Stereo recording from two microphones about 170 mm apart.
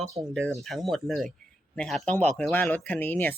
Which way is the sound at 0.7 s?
Centre (ahead or behind).